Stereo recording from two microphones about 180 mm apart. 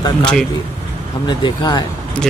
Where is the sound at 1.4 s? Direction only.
25° left (ahead or behind).